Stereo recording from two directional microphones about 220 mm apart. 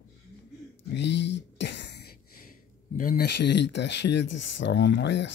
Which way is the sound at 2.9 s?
40° left (ahead or behind).